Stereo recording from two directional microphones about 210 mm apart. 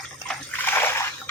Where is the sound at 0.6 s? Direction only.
10° left (ahead or behind).